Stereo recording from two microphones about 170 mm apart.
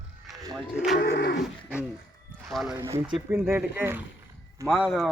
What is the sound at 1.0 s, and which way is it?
Livestock, 75° left (ahead or behind).